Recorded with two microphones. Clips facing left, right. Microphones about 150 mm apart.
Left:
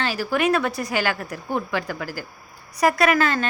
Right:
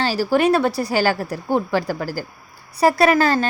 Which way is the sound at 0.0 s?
30° right (ahead or behind).